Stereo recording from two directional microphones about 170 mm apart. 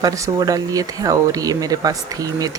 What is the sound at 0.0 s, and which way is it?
Speech, 20° right (ahead or behind).